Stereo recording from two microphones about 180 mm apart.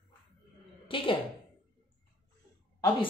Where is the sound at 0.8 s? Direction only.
30° left (ahead or behind).